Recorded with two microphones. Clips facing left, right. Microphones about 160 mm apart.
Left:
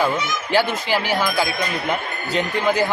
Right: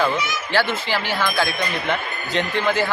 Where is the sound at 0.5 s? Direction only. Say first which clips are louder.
Left 2 dB; 15° left (ahead or behind).